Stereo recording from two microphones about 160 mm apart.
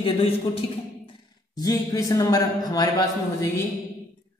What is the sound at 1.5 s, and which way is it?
Speech, 20° left (ahead or behind).